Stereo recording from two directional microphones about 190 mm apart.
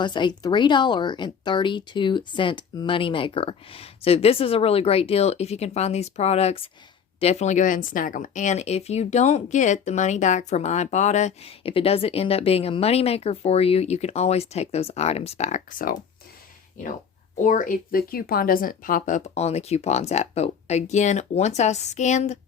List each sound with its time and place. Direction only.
0.0 s speech: 25° left (ahead or behind); by 16.0 s 45° left (ahead or behind)
17.3 s speech: 45° left (ahead or behind)